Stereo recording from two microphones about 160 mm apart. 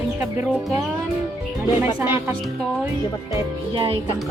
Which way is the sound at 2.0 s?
15° right (ahead or behind).